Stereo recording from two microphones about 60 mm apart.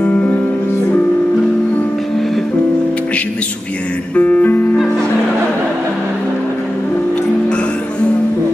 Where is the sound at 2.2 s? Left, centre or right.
Centre.